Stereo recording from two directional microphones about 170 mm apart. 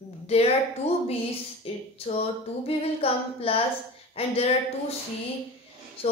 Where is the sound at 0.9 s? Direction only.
40° left (ahead or behind).